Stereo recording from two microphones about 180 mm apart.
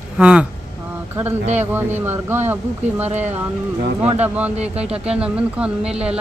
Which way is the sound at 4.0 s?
10° right (ahead or behind).